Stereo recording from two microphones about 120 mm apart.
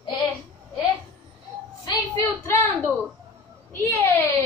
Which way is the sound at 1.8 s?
35° left (ahead or behind).